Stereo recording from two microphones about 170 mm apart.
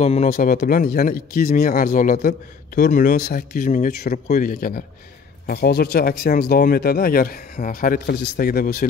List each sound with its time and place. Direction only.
0.0 s speech: 40° left (ahead or behind)
3.2 s speech: 60° left (ahead or behind)
5.5 s speech: 65° left (ahead or behind)